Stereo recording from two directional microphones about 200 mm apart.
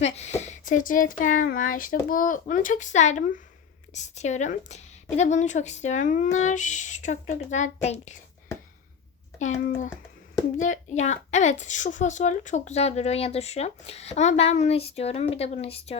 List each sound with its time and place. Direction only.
0.0 s speech: 35° left (ahead or behind)
10.6 s speech: 35° left (ahead or behind)